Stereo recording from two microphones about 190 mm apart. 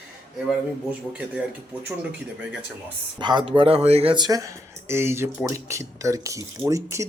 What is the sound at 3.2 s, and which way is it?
Speech, 25° right (ahead or behind).